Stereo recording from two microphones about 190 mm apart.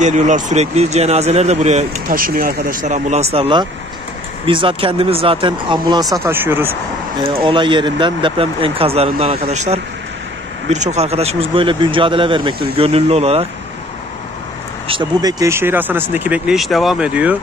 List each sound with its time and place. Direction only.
0.0 s speech: 40° right (ahead or behind); by 6.0 s 25° right (ahead or behind)
6.2 s speech: 10° right (ahead or behind)
7.3 s speech: 25° right (ahead or behind)
14.9 s speech: 20° right (ahead or behind)